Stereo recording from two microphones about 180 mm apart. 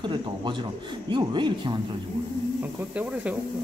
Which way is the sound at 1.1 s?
25° right (ahead or behind).